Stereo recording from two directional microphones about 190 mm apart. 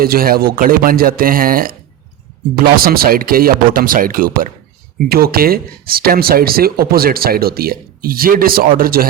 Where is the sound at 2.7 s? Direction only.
50° right (ahead or behind).